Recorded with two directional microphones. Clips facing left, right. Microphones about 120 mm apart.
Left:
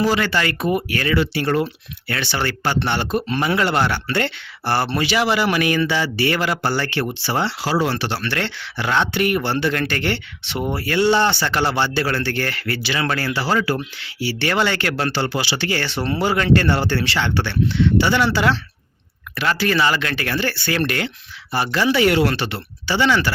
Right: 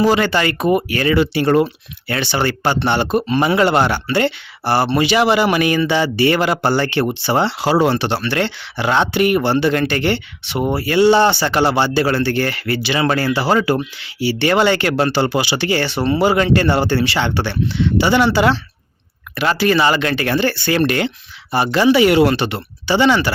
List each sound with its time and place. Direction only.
0.0 s speech: 20° right (ahead or behind)
19.3 s speech: 15° right (ahead or behind)